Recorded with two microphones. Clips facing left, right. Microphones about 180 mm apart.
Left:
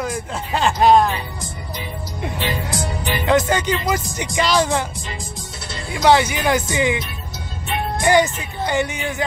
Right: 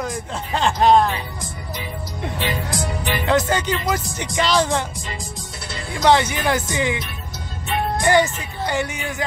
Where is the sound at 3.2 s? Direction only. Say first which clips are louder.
Left 2 dB; 15° left (ahead or behind).